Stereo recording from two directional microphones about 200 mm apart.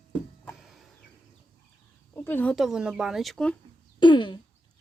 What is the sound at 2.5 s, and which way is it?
Speech, centre (ahead or behind).